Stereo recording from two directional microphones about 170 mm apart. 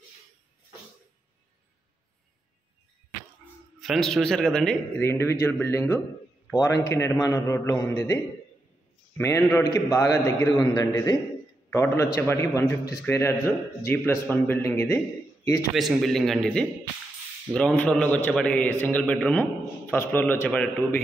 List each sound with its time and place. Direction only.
3.8 s speech: centre (ahead or behind)
4.9 s a man's voice: 15° left (ahead or behind)
15.7 s a man's voice: centre (ahead or behind)